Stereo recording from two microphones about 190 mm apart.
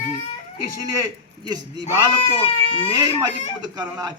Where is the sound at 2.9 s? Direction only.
20° right (ahead or behind).